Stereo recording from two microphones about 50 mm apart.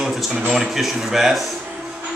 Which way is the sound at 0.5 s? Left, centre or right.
Centre.